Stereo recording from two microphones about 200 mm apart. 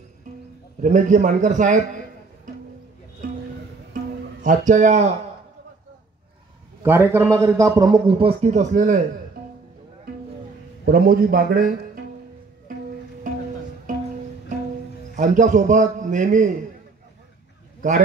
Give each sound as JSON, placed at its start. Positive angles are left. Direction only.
{"t": 0.8, "sound": "a man's voice", "side_deg": -40}
{"t": 3.9, "sound": "music", "side_deg": -40}
{"t": 6.8, "sound": "a man's voice", "side_deg": -10}
{"t": 10.9, "sound": "a man's voice", "side_deg": -45}
{"t": 15.1, "sound": "a man's voice", "side_deg": -40}